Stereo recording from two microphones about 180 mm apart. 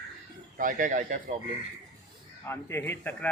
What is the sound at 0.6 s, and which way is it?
Speech, 45° right (ahead or behind).